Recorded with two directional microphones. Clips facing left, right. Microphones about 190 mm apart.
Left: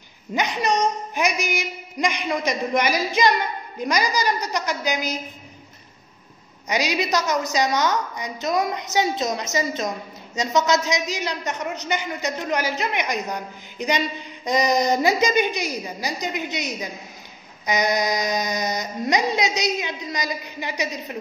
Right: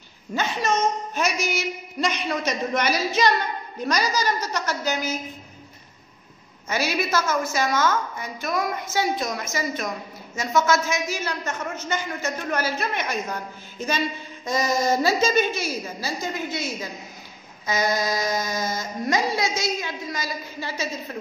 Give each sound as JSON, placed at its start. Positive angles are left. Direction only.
{"t": 0.3, "sound": "a woman's voice", "side_deg": 15}
{"t": 6.7, "sound": "a woman's voice", "side_deg": 15}